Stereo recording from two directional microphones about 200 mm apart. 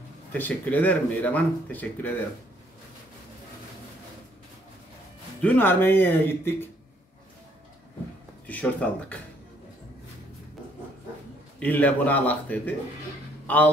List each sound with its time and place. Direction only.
0.3 s speech: 10° left (ahead or behind)
5.4 s speech: 10° left (ahead or behind)
8.5 s speech: 5° left (ahead or behind)
11.6 s a man's voice: 5° left (ahead or behind)